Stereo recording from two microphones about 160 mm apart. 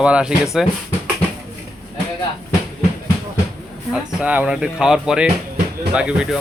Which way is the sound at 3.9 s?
10° right (ahead or behind).